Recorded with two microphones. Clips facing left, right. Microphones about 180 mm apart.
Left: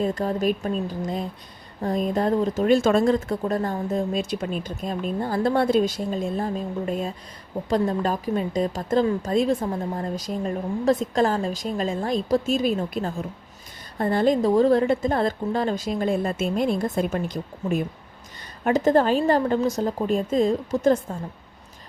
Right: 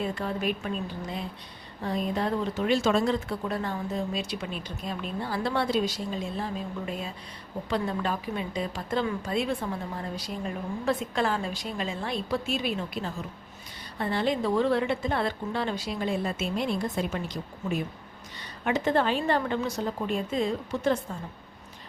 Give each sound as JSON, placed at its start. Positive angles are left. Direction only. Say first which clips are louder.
{"t": 0.0, "sound": "speech", "louder": "left 6 dB", "side_deg": 40}